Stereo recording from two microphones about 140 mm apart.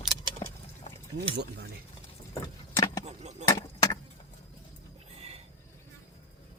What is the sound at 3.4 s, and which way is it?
Keys jangling, 20° left (ahead or behind).